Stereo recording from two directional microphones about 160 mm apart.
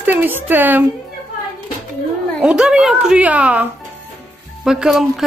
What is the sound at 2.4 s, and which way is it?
A woman's voice, 5° right (ahead or behind).